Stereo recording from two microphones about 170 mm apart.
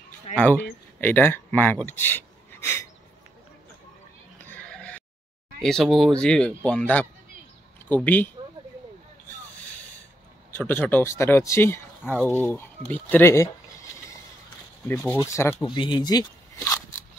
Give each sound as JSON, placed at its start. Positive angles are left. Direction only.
{"t": 0.4, "sound": "speech", "side_deg": 10}
{"t": 4.4, "sound": "bleat", "side_deg": 10}
{"t": 5.6, "sound": "speech", "side_deg": 0}
{"t": 10.6, "sound": "speech", "side_deg": 10}
{"t": 15.2, "sound": "speech", "side_deg": 15}
{"t": 15.5, "sound": "speech", "side_deg": 30}